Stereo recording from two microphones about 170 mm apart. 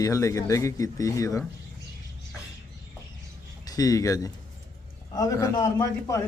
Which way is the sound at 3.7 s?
20° left (ahead or behind).